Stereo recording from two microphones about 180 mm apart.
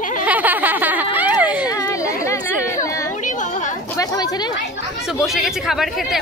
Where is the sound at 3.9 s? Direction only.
20° left (ahead or behind).